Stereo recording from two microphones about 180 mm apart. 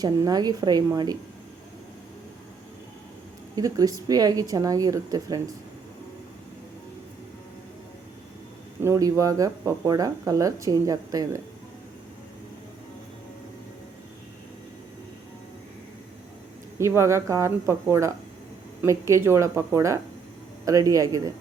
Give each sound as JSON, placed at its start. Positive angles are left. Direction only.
{"t": 0.0, "sound": "speech", "side_deg": -20}
{"t": 3.5, "sound": "speech", "side_deg": -20}
{"t": 8.8, "sound": "speech", "side_deg": -15}
{"t": 16.7, "sound": "speech", "side_deg": -15}